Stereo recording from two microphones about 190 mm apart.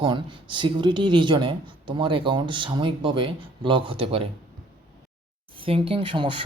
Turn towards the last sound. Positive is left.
turn(degrees=-25)  # may be behind; listen again after turning